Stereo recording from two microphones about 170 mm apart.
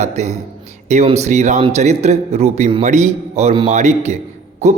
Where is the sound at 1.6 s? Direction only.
40° right (ahead or behind).